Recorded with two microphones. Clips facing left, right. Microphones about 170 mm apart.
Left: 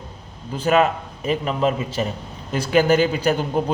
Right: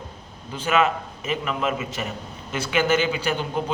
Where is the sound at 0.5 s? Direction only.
40° left (ahead or behind).